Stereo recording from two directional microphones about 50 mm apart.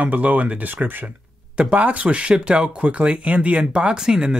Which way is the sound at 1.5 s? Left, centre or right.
Right.